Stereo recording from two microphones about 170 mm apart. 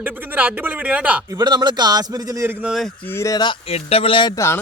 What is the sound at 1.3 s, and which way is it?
Speech, 25° right (ahead or behind).